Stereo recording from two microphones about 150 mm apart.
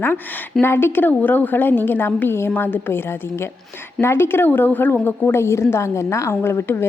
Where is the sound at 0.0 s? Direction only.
15° left (ahead or behind).